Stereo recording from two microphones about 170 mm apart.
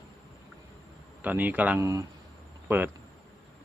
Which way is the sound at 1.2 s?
10° right (ahead or behind).